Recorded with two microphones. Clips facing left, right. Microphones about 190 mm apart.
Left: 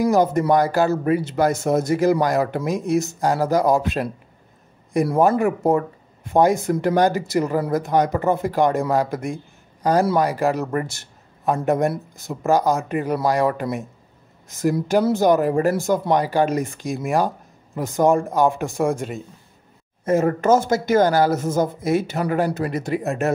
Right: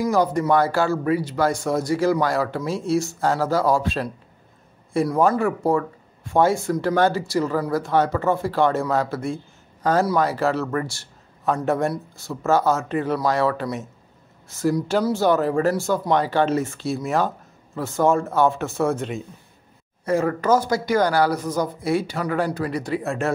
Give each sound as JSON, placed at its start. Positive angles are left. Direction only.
{"t": 0.1, "sound": "speech", "side_deg": 20}
{"t": 20.3, "sound": "speech", "side_deg": 25}